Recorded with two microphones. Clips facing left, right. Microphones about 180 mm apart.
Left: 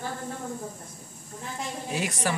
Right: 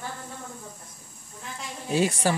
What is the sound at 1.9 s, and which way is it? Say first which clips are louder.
Speech: right 7 dB; 30° right (ahead or behind).